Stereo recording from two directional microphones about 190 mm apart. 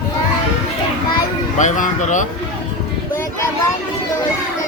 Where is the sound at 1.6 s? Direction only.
40° left (ahead or behind).